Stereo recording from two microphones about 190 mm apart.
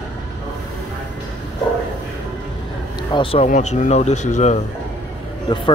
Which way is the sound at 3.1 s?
30° left (ahead or behind).